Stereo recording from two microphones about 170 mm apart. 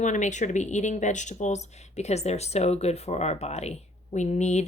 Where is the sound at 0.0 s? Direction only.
45° left (ahead or behind).